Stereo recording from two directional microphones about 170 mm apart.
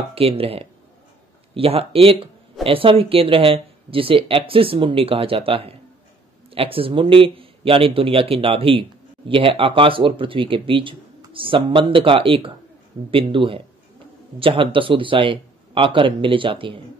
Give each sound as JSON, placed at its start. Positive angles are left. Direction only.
{"t": 0.1, "sound": "speech", "side_deg": -35}